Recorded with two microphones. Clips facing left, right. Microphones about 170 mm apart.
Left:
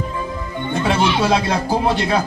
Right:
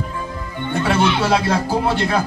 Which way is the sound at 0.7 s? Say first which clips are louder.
Right 1 dB; 15° left (ahead or behind).